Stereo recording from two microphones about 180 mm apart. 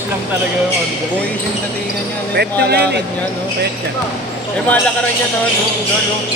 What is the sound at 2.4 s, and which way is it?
Speech, 65° right (ahead or behind).